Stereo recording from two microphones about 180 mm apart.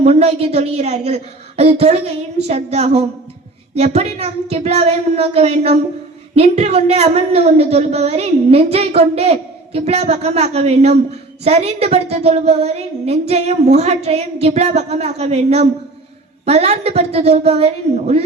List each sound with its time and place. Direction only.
0.0 s a woman's voice: 35° right (ahead or behind)